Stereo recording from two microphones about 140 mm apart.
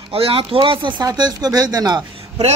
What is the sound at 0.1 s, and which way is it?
Speech, 40° right (ahead or behind).